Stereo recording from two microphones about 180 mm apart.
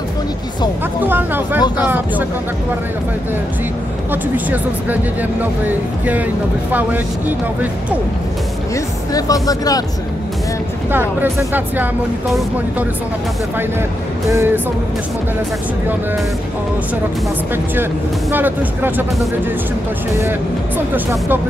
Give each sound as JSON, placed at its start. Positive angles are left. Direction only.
{"t": 1.0, "sound": "speech", "side_deg": -10}
{"t": 4.1, "sound": "speech", "side_deg": -10}
{"t": 9.1, "sound": "speech", "side_deg": 20}
{"t": 10.9, "sound": "speech", "side_deg": -10}
{"t": 14.3, "sound": "speech", "side_deg": -15}
{"t": 18.3, "sound": "speech", "side_deg": -10}
{"t": 20.9, "sound": "speech", "side_deg": -10}